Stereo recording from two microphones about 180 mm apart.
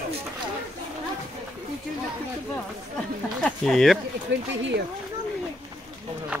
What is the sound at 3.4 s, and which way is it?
Speech, centre (ahead or behind).